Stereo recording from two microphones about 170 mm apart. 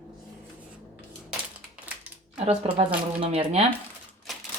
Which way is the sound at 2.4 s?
35° right (ahead or behind).